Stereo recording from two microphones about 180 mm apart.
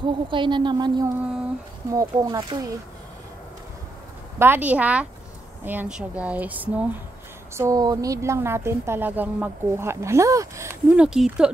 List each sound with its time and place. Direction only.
0.0 s speech: 25° right (ahead or behind)
4.4 s speech: 10° right (ahead or behind)